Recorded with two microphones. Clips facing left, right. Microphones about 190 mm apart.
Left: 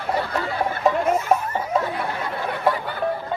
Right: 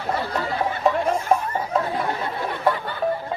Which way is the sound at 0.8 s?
Centre (ahead or behind).